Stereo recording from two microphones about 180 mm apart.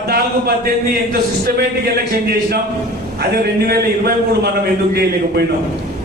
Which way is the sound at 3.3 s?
60° right (ahead or behind).